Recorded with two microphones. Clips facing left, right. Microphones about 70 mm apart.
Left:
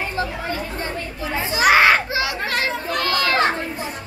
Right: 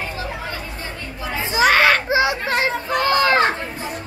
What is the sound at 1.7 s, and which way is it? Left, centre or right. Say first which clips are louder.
Children playing: left 2 dB; centre.